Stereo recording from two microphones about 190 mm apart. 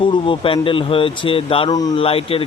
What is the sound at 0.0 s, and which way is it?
Speech, 25° left (ahead or behind).